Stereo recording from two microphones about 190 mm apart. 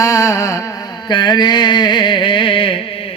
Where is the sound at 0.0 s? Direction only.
15° left (ahead or behind).